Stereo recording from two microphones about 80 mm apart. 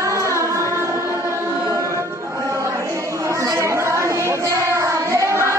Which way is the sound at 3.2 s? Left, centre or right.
Right.